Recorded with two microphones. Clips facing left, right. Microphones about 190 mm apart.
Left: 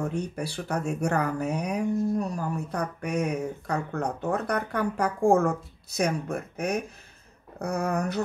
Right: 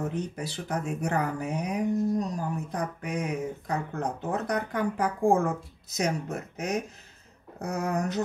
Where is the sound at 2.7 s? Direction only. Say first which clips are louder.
Left 5 dB; 70° left (ahead or behind).